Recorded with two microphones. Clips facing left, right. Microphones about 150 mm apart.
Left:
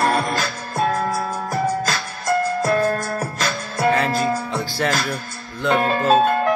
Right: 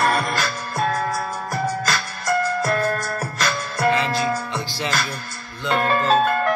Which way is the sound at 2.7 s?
30° left (ahead or behind).